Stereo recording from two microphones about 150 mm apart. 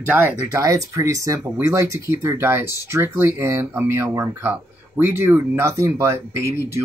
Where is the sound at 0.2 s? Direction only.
15° right (ahead or behind).